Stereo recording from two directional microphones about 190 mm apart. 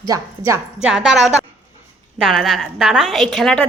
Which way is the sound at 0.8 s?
5° right (ahead or behind).